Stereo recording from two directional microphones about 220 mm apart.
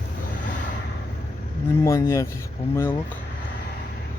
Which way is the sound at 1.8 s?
15° left (ahead or behind).